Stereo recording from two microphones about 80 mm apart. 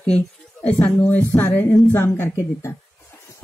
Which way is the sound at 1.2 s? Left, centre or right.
Left.